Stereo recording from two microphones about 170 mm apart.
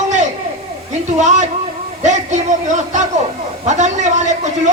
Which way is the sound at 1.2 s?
45° right (ahead or behind).